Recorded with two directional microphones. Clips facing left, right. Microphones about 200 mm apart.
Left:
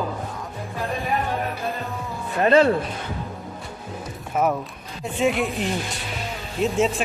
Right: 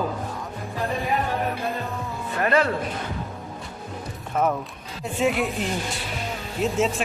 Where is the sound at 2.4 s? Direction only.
25° left (ahead or behind).